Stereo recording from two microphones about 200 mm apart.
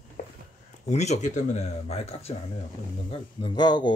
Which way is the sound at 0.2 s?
45° left (ahead or behind).